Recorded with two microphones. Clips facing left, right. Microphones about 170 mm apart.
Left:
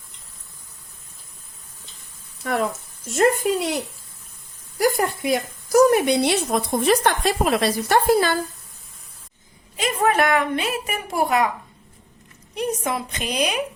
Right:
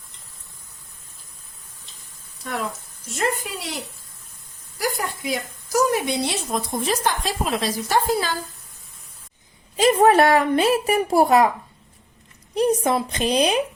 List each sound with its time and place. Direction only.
2.4 s speech: 60° left (ahead or behind)
3.1 s speech: 50° left (ahead or behind)
4.8 s a woman's voice: 55° left (ahead or behind)
9.7 s a woman's voice: 35° right (ahead or behind)
12.5 s a woman's voice: 35° right (ahead or behind)